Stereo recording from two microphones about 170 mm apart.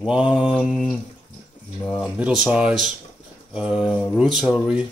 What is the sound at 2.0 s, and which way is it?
Speech, 5° right (ahead or behind).